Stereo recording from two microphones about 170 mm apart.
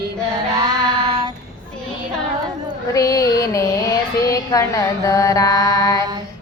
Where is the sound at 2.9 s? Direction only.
20° left (ahead or behind).